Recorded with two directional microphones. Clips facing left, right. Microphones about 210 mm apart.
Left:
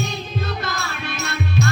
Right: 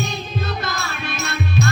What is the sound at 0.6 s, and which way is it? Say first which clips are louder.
Music: right 1 dB; 55° left (ahead or behind).